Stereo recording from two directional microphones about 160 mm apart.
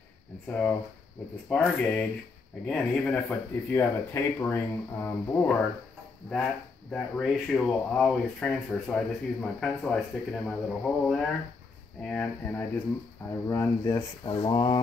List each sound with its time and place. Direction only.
0.5 s speech: 10° left (ahead or behind)
13.5 s speech: 20° left (ahead or behind)
14.2 s speech: 35° left (ahead or behind)